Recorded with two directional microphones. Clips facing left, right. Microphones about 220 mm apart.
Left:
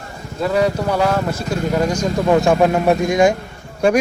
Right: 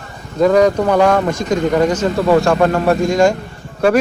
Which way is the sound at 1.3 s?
10° left (ahead or behind).